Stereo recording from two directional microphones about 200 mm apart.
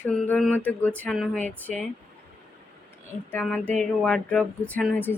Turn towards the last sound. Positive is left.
turn(degrees=10)  # may be behind; listen again after turning